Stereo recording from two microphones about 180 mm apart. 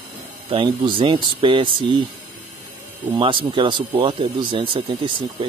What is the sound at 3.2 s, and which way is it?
Speech, 30° right (ahead or behind).